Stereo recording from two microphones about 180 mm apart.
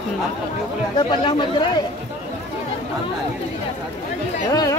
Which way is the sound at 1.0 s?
25° left (ahead or behind).